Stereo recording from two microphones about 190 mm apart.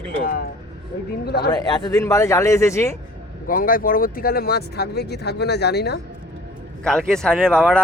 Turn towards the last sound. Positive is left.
turn(degrees=0)  # may be behind; listen again after turning